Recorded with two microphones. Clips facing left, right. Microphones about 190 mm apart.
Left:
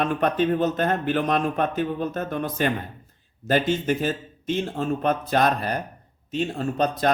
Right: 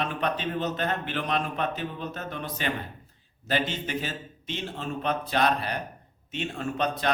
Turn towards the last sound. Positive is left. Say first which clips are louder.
# left 5 dB
turn(degrees=40)  # may be behind; listen again after turning